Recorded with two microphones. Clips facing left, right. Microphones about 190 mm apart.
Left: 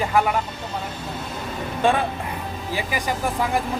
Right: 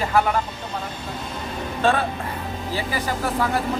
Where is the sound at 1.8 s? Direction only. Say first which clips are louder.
Even; 15° left (ahead or behind).